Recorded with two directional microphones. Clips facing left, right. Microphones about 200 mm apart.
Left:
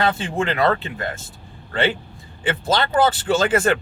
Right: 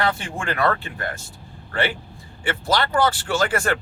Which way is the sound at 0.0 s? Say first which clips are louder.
Left 4 dB; 20° left (ahead or behind).